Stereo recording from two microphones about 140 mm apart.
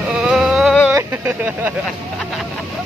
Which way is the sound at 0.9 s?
15° right (ahead or behind).